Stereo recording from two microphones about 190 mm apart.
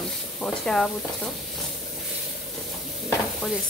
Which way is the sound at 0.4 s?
5° left (ahead or behind).